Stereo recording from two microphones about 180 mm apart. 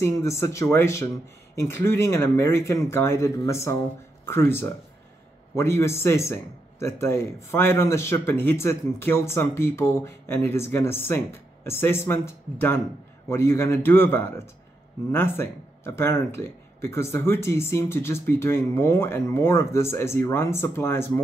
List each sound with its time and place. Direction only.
0.0 s speech: 15° left (ahead or behind)